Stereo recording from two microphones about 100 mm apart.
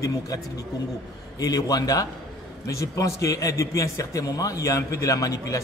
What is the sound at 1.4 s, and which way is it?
A man's voice, 40° left (ahead or behind).